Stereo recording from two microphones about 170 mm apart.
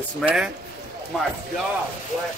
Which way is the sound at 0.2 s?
5° right (ahead or behind).